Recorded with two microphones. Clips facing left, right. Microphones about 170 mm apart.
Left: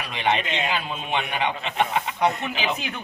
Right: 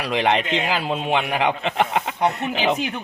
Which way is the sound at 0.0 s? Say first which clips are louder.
Right 4 dB; 80° right.